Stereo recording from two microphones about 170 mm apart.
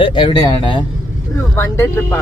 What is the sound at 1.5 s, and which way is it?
Speech, 15° left (ahead or behind).